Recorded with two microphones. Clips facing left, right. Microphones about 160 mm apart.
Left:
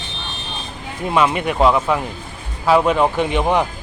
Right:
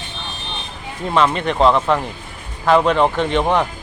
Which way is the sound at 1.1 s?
10° left (ahead or behind).